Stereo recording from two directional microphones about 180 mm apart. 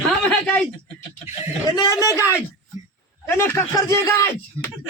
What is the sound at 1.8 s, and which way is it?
Speech, 20° left (ahead or behind).